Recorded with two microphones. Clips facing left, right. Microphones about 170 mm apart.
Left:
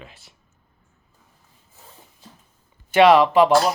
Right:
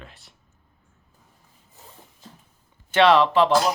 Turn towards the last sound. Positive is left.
turn(degrees=10)  # may be behind; listen again after turning